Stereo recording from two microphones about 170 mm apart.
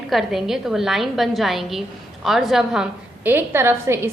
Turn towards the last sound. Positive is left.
turn(degrees=-15)  # may be behind; listen again after turning